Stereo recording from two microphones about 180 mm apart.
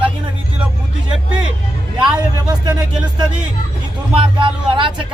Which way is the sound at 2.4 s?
20° right (ahead or behind).